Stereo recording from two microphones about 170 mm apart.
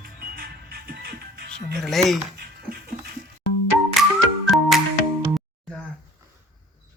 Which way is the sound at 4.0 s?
Centre (ahead or behind).